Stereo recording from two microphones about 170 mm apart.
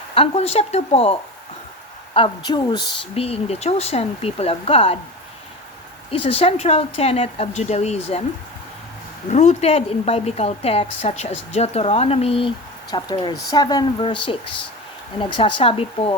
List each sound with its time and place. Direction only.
0.1 s a woman's voice: 35° left (ahead or behind)
2.1 s a woman's voice: 30° left (ahead or behind)
6.1 s a woman's voice: 35° left (ahead or behind)
9.3 s a woman's voice: 40° left (ahead or behind)